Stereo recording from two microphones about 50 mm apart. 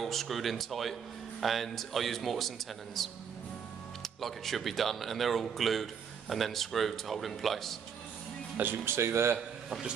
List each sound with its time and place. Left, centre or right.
0.0 s speech: centre
8.8 s speech: right
9.7 s speech: centre